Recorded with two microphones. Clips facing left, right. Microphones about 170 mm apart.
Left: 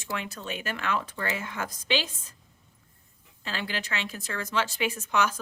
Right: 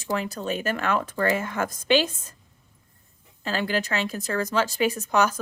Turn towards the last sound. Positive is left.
turn(degrees=-40)  # may be behind; listen again after turning